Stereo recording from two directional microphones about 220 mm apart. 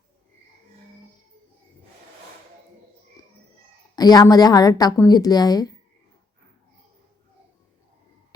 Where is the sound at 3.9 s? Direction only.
20° left (ahead or behind).